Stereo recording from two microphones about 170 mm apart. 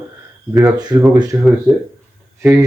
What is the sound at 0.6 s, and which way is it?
Speech, 20° right (ahead or behind).